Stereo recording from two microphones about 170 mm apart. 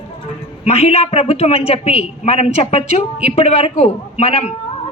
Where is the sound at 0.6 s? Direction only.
35° left (ahead or behind).